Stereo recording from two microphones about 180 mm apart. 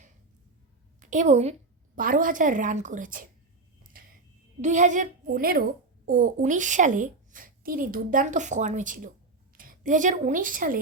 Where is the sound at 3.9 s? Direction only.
50° right (ahead or behind).